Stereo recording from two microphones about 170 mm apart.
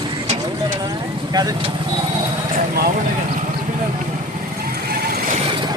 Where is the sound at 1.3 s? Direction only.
20° right (ahead or behind).